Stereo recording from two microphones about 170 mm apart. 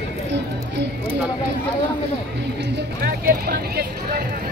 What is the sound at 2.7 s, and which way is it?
Speech, 65° right (ahead or behind).